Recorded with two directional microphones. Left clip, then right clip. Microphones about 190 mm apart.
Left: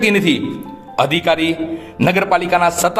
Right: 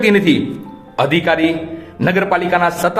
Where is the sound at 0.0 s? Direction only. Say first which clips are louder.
Right 2 dB; 35° left (ahead or behind).